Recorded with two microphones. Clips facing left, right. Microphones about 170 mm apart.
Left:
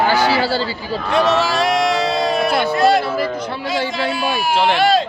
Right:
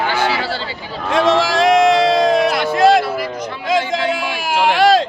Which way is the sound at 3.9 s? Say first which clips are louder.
Right 1 dB; 90° right.